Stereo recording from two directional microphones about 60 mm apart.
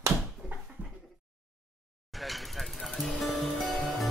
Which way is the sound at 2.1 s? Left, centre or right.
Centre.